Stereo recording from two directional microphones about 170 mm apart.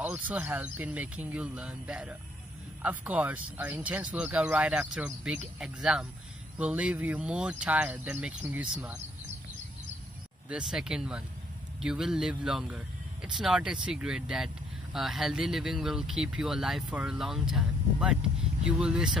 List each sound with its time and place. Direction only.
0.0 s speech: 10° right (ahead or behind)
10.5 s speech: 5° right (ahead or behind)